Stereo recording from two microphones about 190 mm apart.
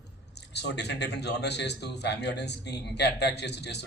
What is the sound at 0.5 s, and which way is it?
A man's voice, 60° left (ahead or behind).